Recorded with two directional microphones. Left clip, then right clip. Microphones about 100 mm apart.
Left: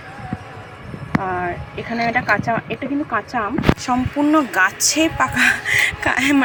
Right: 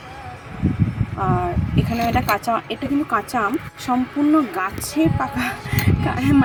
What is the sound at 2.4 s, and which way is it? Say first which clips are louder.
Speech: left 1 dB; 10° right (ahead or behind).